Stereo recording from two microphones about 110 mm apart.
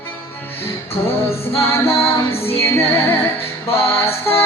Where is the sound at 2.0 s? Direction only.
60° left (ahead or behind).